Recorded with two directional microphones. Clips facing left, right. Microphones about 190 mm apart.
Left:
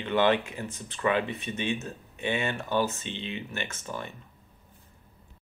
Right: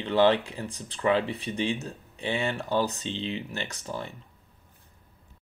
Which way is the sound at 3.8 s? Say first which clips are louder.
Right 2 dB; 30° right (ahead or behind).